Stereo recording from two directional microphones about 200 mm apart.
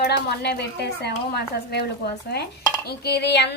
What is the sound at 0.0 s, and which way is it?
A woman's voice, 55° left (ahead or behind).